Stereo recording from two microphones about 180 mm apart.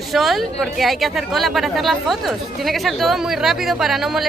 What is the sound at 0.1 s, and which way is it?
Speech, centre (ahead or behind).